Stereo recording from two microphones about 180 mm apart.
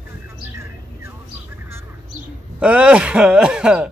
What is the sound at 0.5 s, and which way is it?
Vehicle, 15° right (ahead or behind).